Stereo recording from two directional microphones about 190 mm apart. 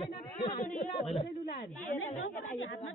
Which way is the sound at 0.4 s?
30° left (ahead or behind).